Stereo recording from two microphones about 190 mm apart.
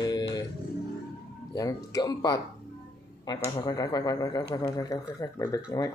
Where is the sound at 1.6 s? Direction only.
20° left (ahead or behind).